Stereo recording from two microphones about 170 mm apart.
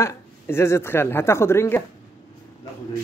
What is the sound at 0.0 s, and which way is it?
A woman's voice, 15° left (ahead or behind).